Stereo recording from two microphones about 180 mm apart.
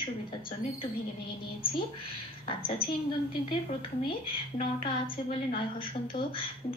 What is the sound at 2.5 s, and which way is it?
Speech, 30° left (ahead or behind).